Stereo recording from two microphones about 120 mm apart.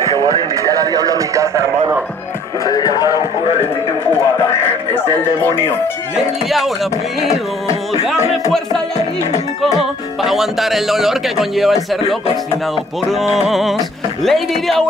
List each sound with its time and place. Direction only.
0.2 s speech: 30° right (ahead or behind)
2.6 s music: 30° left (ahead or behind)
4.9 s speech: 20° left (ahead or behind)
10.2 s a man's voice: centre (ahead or behind)
13.1 s a man's voice: centre (ahead or behind)